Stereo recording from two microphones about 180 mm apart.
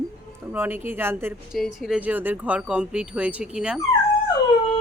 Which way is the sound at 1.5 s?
Centre (ahead or behind).